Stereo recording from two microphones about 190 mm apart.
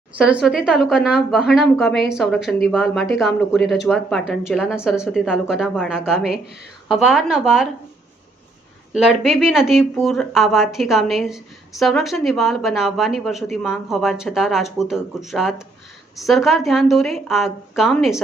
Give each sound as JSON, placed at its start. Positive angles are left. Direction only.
{"t": 0.2, "sound": "speech", "side_deg": -5}
{"t": 8.9, "sound": "speech", "side_deg": -5}